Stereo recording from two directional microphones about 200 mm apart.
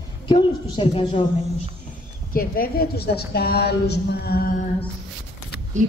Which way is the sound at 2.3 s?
45° left (ahead or behind).